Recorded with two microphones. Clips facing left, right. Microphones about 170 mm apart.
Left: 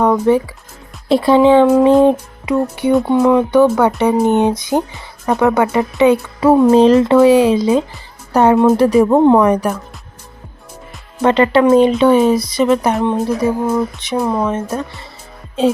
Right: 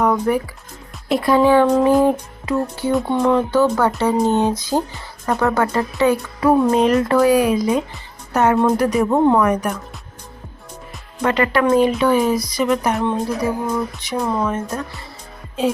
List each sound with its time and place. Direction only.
0.0 s speech: 25° left (ahead or behind)
9.5 s a woman's voice: 30° left (ahead or behind)
11.2 s speech: 25° left (ahead or behind)